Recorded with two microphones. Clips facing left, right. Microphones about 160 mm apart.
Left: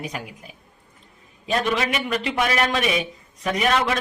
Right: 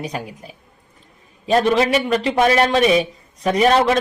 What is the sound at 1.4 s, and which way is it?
A man's voice, 35° right (ahead or behind).